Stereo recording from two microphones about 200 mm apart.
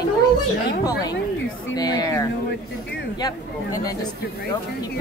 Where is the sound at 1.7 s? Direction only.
20° left (ahead or behind).